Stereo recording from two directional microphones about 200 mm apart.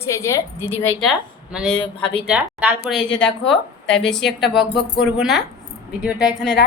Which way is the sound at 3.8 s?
65° left (ahead or behind).